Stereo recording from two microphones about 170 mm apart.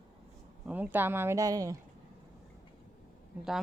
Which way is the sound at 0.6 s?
10° right (ahead or behind).